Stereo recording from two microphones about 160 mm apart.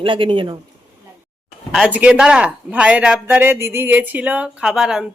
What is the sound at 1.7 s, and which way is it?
Speech, 5° right (ahead or behind).